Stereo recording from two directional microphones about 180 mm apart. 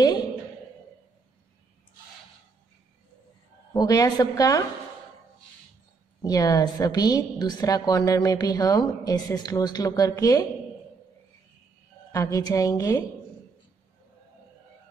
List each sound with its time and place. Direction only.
3.7 s a woman's voice: 20° left (ahead or behind)
6.2 s a woman's voice: 20° left (ahead or behind)
12.1 s a woman's voice: 20° left (ahead or behind)